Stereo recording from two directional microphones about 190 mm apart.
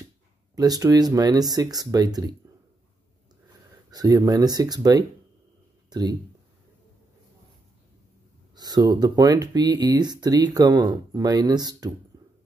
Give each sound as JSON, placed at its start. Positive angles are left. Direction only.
{"t": 0.6, "sound": "speech", "side_deg": -20}
{"t": 3.9, "sound": "speech", "side_deg": -20}
{"t": 5.9, "sound": "a sound", "side_deg": -20}
{"t": 8.5, "sound": "speech", "side_deg": -20}